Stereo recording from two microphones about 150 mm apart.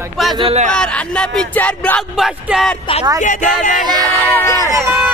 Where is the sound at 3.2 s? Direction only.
55° left (ahead or behind).